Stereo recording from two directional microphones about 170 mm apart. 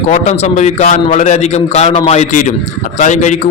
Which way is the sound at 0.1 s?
40° left (ahead or behind).